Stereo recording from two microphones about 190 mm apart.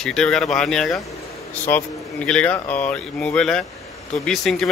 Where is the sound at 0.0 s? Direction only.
5° left (ahead or behind).